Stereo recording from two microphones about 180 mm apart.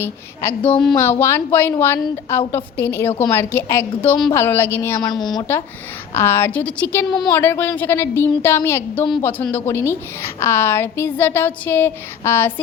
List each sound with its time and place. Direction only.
0.0 s a woman's voice: 10° left (ahead or behind)
5.1 s speech: centre (ahead or behind)
5.4 s a woman's voice: 15° left (ahead or behind)